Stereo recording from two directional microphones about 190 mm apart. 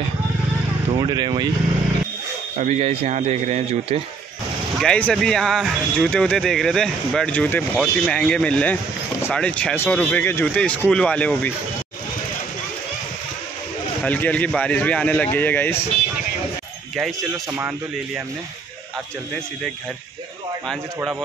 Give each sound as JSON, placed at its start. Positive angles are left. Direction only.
{"t": 0.9, "sound": "speech", "side_deg": -20}
{"t": 2.6, "sound": "speech", "side_deg": -40}
{"t": 4.7, "sound": "speech", "side_deg": 5}
{"t": 14.0, "sound": "speech", "side_deg": 10}
{"t": 16.9, "sound": "speech", "side_deg": 0}
{"t": 20.6, "sound": "speech", "side_deg": 0}